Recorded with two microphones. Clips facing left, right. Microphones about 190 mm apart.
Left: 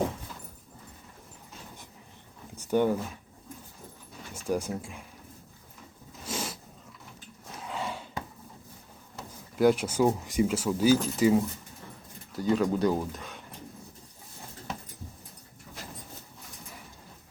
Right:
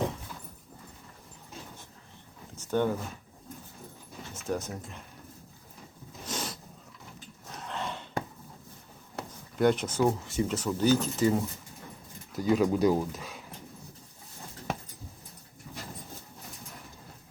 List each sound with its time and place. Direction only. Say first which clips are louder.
2.6 s speech: left 3 dB; 10° left (ahead or behind)
4.4 s speech: left 3 dB; 10° left (ahead or behind)
6.2 s a sound: left 1 dB; 5° left (ahead or behind)
9.2 s a sound: right 4 dB; 60° right (ahead or behind)
9.6 s speech: left 2 dB; 5° left (ahead or behind)
12.4 s speech: right 1 dB; 10° right (ahead or behind)